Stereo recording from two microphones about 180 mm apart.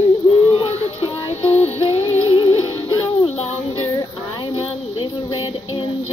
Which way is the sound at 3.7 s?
25° left (ahead or behind).